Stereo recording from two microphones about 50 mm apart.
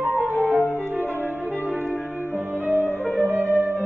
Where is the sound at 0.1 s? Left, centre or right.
Left.